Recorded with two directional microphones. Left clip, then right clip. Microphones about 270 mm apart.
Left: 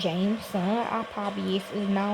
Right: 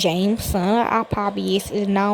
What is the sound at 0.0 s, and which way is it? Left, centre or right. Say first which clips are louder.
A woman's voice: right 8 dB; right.